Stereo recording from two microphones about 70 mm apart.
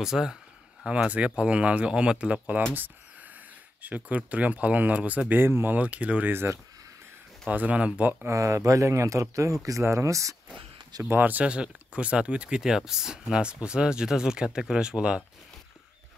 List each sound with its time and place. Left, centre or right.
0.0 s speech: centre
3.8 s speech: right
5.8 s speech: centre
6.3 s speech: right
7.4 s speech: right
8.3 s speech: right
11.1 s speech: right